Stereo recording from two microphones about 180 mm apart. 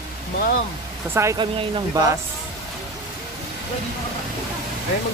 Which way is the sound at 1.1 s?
15° right (ahead or behind).